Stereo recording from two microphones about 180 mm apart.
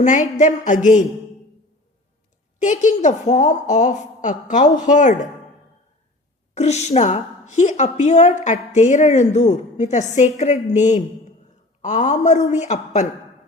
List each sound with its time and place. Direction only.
0.0 s a woman's voice: 45° left (ahead or behind)
2.6 s a woman's voice: 40° left (ahead or behind)
6.5 s a woman's voice: 40° left (ahead or behind)